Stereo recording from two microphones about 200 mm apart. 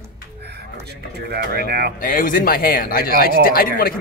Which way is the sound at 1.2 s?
50° right (ahead or behind).